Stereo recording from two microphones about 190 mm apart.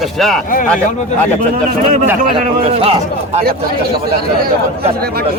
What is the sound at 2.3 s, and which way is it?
A man's voice, 30° right (ahead or behind).